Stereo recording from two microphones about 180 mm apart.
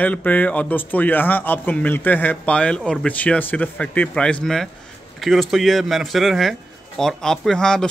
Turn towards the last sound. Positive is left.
turn(degrees=5)  # may be behind; listen again after turning